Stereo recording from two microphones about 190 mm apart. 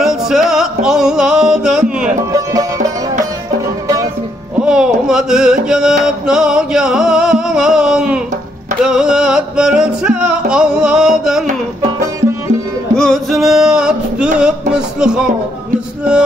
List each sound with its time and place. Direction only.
0.0 s music: 5° right (ahead or behind)
2.3 s music: 20° right (ahead or behind)
4.6 s music: 5° right (ahead or behind)
12.9 s music: centre (ahead or behind)